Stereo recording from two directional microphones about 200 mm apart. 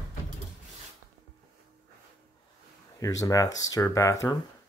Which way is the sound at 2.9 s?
15° left (ahead or behind).